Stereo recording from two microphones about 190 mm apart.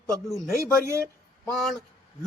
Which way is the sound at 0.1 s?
15° right (ahead or behind).